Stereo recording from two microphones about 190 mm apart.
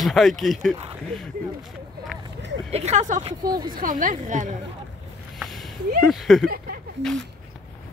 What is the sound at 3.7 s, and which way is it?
Speech, 45° right (ahead or behind).